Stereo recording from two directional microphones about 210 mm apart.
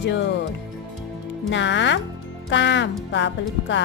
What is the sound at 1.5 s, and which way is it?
Speech, 60° left (ahead or behind).